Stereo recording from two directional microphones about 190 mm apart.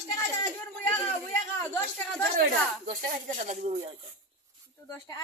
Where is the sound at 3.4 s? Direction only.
40° right (ahead or behind).